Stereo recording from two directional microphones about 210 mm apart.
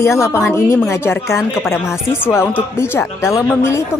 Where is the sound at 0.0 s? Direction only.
10° left (ahead or behind).